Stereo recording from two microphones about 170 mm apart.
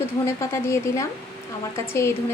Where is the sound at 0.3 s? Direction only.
15° left (ahead or behind).